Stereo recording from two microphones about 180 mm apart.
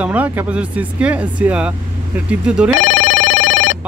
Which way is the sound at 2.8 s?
90° left.